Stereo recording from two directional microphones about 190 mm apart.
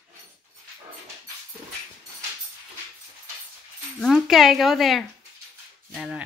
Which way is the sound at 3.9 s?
Centre (ahead or behind).